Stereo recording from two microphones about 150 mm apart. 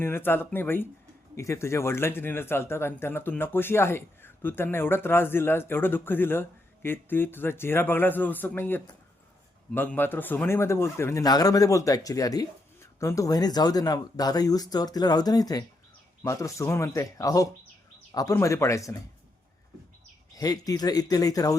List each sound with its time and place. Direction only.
0.0 s speech: 15° left (ahead or behind)
20.3 s speech: 25° left (ahead or behind)